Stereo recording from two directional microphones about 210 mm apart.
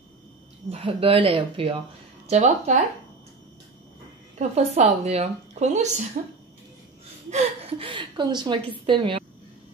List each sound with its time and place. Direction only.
0.7 s a woman's voice: 25° right (ahead or behind)
4.4 s a woman's voice: 30° right (ahead or behind)
7.2 s speech: 30° right (ahead or behind)